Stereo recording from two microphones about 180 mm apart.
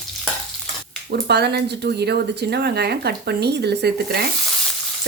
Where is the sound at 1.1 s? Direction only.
65° right (ahead or behind).